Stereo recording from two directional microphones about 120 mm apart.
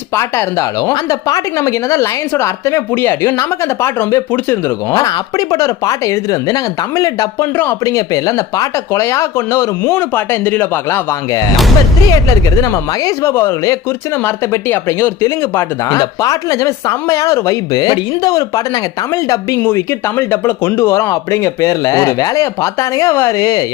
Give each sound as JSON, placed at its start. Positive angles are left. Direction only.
{"t": 0.1, "sound": "speech", "side_deg": 25}
{"t": 7.9, "sound": "speech", "side_deg": 30}